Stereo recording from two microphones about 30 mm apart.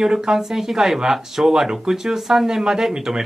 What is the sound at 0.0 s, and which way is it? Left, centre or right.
Speech, right.